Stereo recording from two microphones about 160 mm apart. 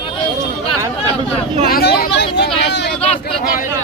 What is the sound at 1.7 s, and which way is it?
Vehicle, 80° left.